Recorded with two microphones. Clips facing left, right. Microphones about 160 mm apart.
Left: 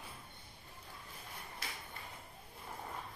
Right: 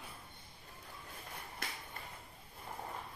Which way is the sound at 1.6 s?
55° right (ahead or behind).